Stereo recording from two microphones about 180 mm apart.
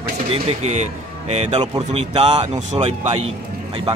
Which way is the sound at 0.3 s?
35° right (ahead or behind).